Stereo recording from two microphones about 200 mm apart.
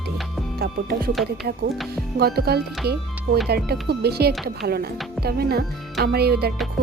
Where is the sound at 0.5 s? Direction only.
50° right (ahead or behind).